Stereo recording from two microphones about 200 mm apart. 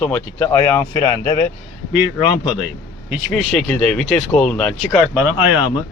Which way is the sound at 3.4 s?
5° left (ahead or behind).